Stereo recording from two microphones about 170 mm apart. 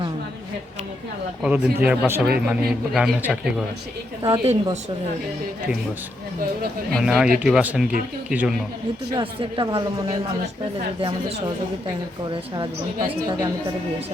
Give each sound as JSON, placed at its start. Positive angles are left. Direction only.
{"t": 1.4, "sound": "a man's voice", "side_deg": -5}
{"t": 4.2, "sound": "speech", "side_deg": -30}
{"t": 6.9, "sound": "a man's voice", "side_deg": 0}
{"t": 9.1, "sound": "speech", "side_deg": -30}